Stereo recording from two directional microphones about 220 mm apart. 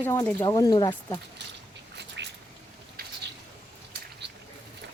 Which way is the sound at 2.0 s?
50° right (ahead or behind).